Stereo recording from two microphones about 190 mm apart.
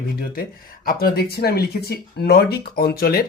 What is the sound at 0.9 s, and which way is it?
Speech, 50° left (ahead or behind).